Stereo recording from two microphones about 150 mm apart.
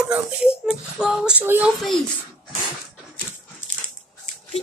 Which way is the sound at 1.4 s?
15° right (ahead or behind).